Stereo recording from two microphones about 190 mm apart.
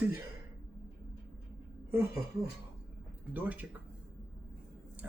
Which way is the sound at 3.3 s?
10° right (ahead or behind).